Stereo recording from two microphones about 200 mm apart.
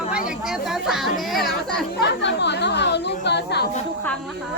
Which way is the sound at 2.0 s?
60° left (ahead or behind).